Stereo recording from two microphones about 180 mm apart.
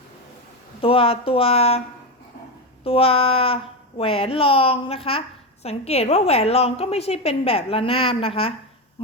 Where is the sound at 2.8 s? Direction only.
30° left (ahead or behind).